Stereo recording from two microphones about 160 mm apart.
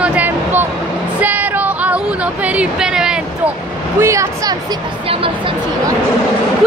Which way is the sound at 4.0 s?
20° right (ahead or behind).